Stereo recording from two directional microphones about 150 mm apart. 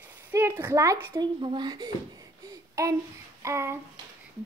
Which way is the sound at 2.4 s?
20° right (ahead or behind).